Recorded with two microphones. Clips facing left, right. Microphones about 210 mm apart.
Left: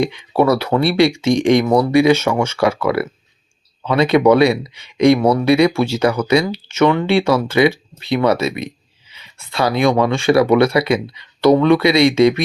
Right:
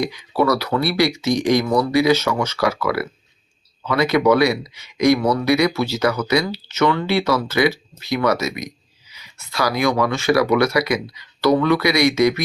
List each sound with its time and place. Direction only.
0.0 s speech: 25° left (ahead or behind)